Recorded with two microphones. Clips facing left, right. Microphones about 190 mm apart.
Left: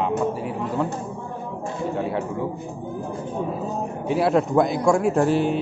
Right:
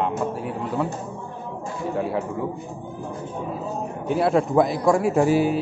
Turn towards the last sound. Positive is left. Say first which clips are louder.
# right 1 dB
turn(degrees=-5)  # may be behind; listen again after turning